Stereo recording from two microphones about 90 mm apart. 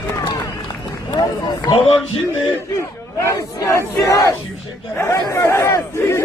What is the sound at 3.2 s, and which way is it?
Speech, 30° left (ahead or behind).